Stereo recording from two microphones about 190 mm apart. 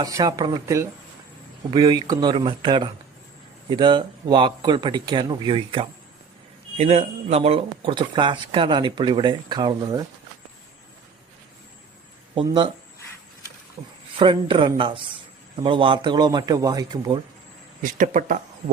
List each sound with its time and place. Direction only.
0.0 s speech: 20° right (ahead or behind)
12.3 s speech: 25° right (ahead or behind)
14.2 s speech: 25° right (ahead or behind)
17.8 s speech: 45° right (ahead or behind)